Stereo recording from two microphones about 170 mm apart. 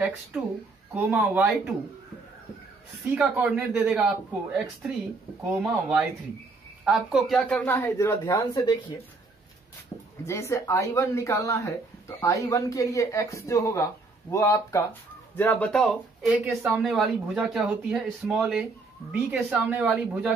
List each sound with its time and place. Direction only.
0.9 s speech: 10° right (ahead or behind)
3.2 s speech: 5° right (ahead or behind); by 8.6 s 20° left (ahead or behind)
10.2 s speech: 15° left (ahead or behind); by 20.3 s 10° right (ahead or behind)